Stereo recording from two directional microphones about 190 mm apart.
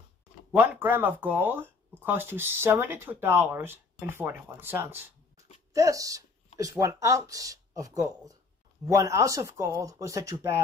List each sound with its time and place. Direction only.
0.5 s speech: 10° right (ahead or behind)